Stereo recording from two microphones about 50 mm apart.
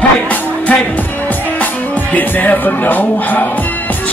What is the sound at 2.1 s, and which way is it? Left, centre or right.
Music, left.